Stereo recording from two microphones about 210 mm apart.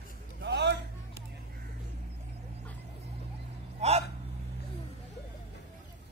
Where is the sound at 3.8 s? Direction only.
30° right (ahead or behind).